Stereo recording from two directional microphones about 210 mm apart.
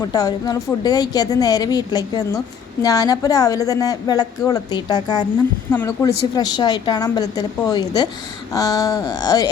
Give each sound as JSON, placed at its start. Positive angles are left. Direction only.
{"t": 0.0, "sound": "a woman's voice", "side_deg": 15}